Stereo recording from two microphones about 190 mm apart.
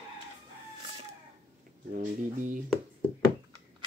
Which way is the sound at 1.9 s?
40° right (ahead or behind).